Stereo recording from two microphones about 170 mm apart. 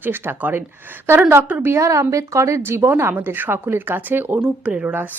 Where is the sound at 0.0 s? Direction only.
10° right (ahead or behind).